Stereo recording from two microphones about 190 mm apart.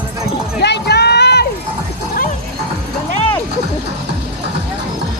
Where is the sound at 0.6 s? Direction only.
60° left (ahead or behind).